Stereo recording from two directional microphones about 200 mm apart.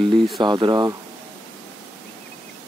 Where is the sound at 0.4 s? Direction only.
20° right (ahead or behind).